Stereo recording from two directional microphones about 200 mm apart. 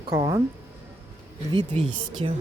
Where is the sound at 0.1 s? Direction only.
15° right (ahead or behind).